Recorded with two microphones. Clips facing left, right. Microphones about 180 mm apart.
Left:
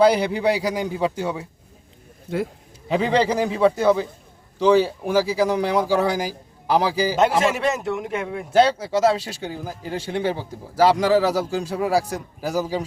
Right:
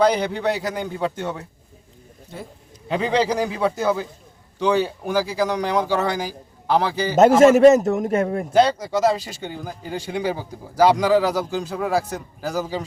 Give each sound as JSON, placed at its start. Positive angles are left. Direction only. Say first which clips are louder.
{"t": 0.0, "sound": "speech", "louder": "left 2 dB", "side_deg": 5}
{"t": 2.9, "sound": "speech", "louder": "left 1 dB", "side_deg": 0}
{"t": 7.2, "sound": "a man's voice", "louder": "right 10 dB", "side_deg": -45}
{"t": 8.5, "sound": "speech", "louder": "left 1 dB", "side_deg": 5}